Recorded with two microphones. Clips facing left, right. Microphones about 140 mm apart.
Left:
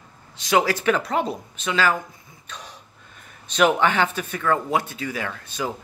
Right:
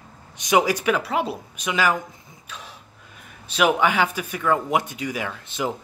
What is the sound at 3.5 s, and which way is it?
Speech, 5° right (ahead or behind).